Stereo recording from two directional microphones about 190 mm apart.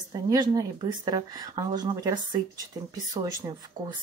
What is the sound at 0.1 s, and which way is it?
Speech, 20° right (ahead or behind).